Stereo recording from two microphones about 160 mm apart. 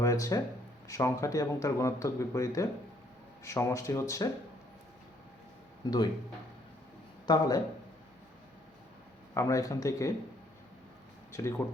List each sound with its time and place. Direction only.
0.0 s speech: 20° left (ahead or behind)
7.3 s speech: 25° left (ahead or behind)
9.3 s speech: 20° left (ahead or behind)
11.3 s speech: 15° left (ahead or behind)